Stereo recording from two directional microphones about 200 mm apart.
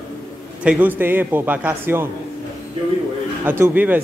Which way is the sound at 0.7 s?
10° right (ahead or behind).